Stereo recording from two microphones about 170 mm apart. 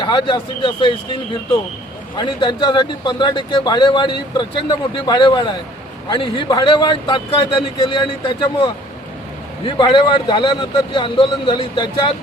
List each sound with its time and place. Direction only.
0.0 s speech: 30° left (ahead or behind)